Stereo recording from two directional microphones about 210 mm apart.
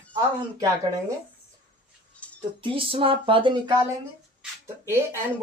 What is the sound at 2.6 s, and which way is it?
Speech, 25° right (ahead or behind).